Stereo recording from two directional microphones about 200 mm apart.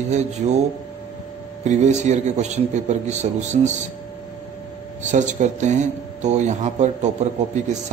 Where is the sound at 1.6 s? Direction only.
35° right (ahead or behind).